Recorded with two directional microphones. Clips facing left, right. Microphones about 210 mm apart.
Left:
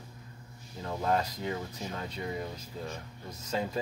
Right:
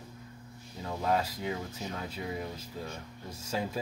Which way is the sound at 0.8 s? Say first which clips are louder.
Even; 5° right (ahead or behind).